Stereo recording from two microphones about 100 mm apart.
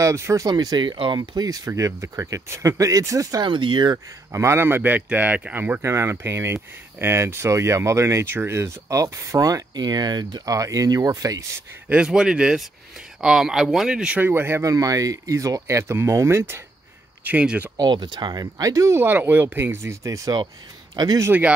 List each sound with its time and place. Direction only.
0.0 s speech: 30° right (ahead or behind)
0.5 s speech: 45° right (ahead or behind); by 1.3 s 60° right (ahead or behind)
1.3 s speech: 40° right (ahead or behind)
3.4 s speech: 50° right (ahead or behind)
4.3 s speech: 25° right (ahead or behind)
11.9 s speech: 10° right (ahead or behind); by 16.6 s 25° right (ahead or behind)
17.2 s speech: 15° right (ahead or behind)
17.7 s speech: 50° right (ahead or behind); by 20.3 s 30° right (ahead or behind)
20.9 s a man's voice: 40° right (ahead or behind)
21.3 s speech: 15° right (ahead or behind)